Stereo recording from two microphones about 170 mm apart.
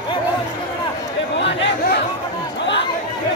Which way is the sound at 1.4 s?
90° left.